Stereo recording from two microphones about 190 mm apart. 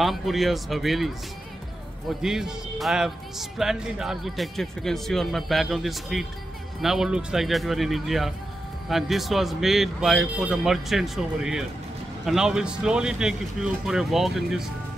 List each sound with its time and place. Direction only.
0.0 s speech: centre (ahead or behind)